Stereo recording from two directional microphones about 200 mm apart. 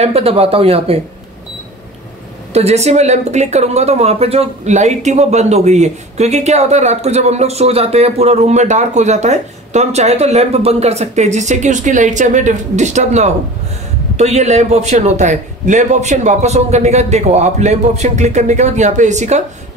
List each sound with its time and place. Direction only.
0.0 s speech: 30° right (ahead or behind)
2.5 s speech: 30° right (ahead or behind)